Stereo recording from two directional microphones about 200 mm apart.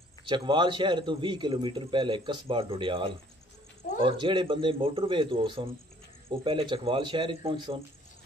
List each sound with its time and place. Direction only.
0.3 s a man's voice: 25° right (ahead or behind)